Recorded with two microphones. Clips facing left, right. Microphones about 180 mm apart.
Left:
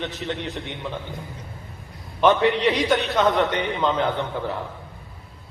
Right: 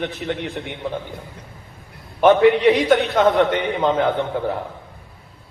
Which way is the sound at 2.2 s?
50° right (ahead or behind).